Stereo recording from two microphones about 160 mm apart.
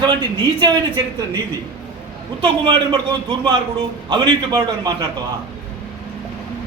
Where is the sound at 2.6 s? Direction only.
30° right (ahead or behind).